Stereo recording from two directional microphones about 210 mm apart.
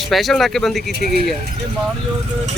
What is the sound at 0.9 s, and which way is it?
Speech, 45° right (ahead or behind).